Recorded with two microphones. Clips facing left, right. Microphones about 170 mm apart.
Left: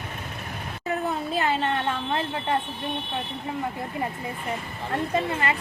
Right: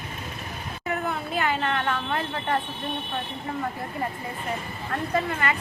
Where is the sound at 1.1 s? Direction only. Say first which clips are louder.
Left 2 dB; 30° left (ahead or behind).